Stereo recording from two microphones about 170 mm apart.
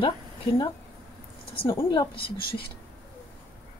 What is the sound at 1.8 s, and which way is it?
Speech, 25° left (ahead or behind).